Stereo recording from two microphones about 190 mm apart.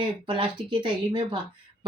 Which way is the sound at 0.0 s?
25° right (ahead or behind).